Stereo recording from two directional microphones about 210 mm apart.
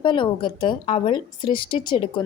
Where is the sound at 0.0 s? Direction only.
25° left (ahead or behind).